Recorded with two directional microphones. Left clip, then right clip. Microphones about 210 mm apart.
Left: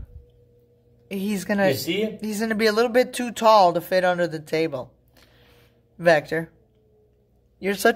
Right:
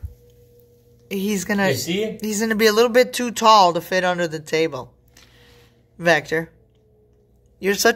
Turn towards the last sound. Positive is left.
turn(degrees=15)  # may be behind; listen again after turning